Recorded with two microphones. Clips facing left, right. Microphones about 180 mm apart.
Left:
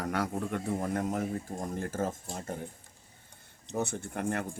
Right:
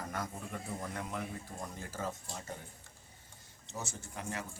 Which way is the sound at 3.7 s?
60° left (ahead or behind).